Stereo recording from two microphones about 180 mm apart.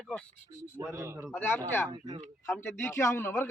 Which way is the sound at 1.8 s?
25° right (ahead or behind).